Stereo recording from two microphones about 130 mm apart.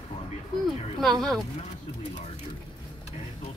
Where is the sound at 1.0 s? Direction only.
Centre (ahead or behind).